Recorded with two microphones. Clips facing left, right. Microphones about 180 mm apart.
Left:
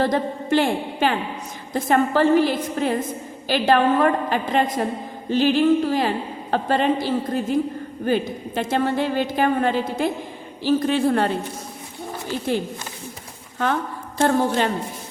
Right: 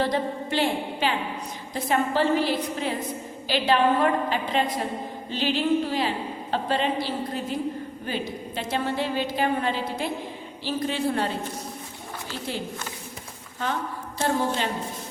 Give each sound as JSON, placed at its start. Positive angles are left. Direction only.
{"t": 0.0, "sound": "a woman's voice", "side_deg": 50}
{"t": 14.2, "sound": "a woman's voice", "side_deg": 60}